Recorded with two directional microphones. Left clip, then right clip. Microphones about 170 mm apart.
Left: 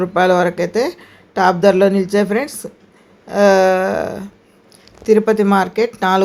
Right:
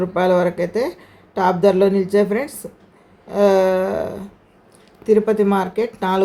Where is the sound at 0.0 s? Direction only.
15° left (ahead or behind).